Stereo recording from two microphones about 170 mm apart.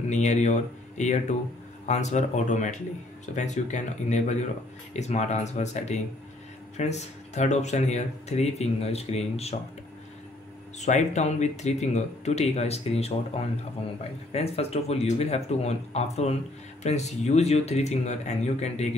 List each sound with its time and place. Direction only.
0.1 s speech: 45° left (ahead or behind)
10.8 s speech: 45° left (ahead or behind)